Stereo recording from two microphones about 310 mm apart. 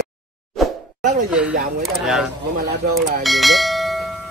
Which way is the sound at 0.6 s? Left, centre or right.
Centre.